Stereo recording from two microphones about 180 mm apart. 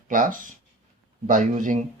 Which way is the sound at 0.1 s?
50° right (ahead or behind).